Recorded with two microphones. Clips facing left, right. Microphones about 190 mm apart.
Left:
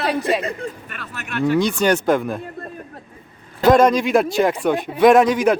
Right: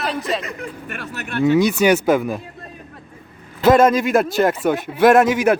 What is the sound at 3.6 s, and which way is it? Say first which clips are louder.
Speech: even; 5° right (ahead or behind).